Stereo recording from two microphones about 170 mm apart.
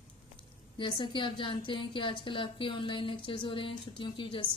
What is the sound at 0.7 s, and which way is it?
A woman's voice, 30° left (ahead or behind).